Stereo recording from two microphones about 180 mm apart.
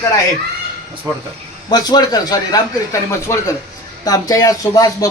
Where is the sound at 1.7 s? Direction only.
20° left (ahead or behind).